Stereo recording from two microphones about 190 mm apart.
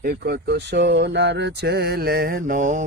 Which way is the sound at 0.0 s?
55° right (ahead or behind).